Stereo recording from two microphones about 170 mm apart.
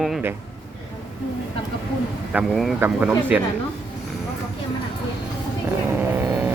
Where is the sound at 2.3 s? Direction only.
5° right (ahead or behind).